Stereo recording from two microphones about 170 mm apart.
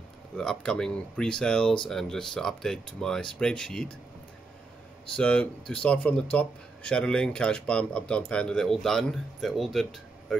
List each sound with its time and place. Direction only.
0.4 s speech: 5° left (ahead or behind)
5.1 s speech: 5° left (ahead or behind)